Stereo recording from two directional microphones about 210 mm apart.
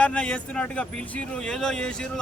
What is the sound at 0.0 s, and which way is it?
Speech, 5° left (ahead or behind).